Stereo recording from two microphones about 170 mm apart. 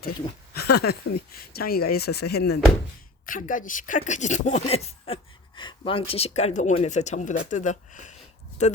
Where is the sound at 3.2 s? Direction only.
50° left (ahead or behind).